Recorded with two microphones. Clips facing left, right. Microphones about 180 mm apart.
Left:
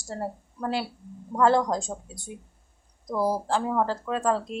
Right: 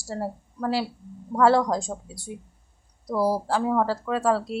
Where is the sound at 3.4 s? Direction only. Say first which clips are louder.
Right 2 dB; 5° right (ahead or behind).